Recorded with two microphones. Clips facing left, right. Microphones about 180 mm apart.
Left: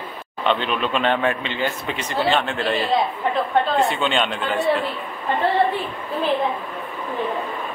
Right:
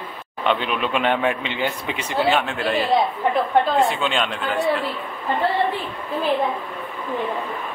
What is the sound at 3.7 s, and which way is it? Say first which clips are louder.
Speech: even; centre (ahead or behind).